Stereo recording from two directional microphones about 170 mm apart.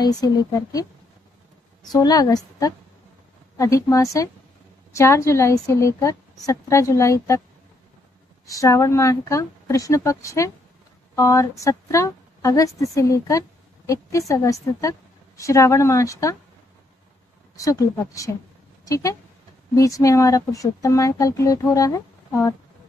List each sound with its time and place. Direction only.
0.0 s speech: 20° left (ahead or behind)
1.9 s a woman's voice: 20° left (ahead or behind)
8.5 s a woman's voice: 20° left (ahead or behind)
17.6 s speech: 20° left (ahead or behind)